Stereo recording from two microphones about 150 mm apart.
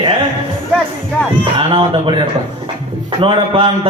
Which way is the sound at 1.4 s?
35° right (ahead or behind).